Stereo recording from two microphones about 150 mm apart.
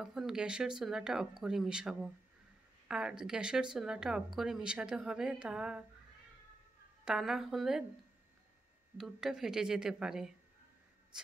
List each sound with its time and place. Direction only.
0.0 s speech: centre (ahead or behind)
7.1 s speech: 5° right (ahead or behind)
8.9 s speech: centre (ahead or behind)